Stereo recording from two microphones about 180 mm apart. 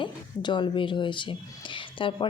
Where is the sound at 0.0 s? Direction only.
25° left (ahead or behind).